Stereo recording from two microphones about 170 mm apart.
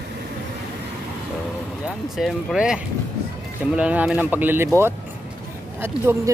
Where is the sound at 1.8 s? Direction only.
Centre (ahead or behind).